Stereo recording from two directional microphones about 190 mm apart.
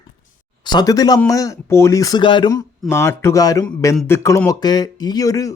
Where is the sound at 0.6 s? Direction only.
20° left (ahead or behind).